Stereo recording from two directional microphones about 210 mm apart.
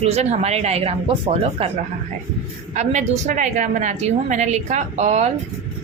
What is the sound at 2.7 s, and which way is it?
A woman's voice, 35° right (ahead or behind).